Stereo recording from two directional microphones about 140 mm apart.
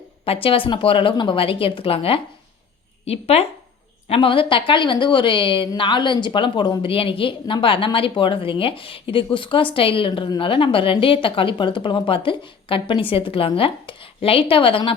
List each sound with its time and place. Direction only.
0.3 s a woman's voice: 40° left (ahead or behind)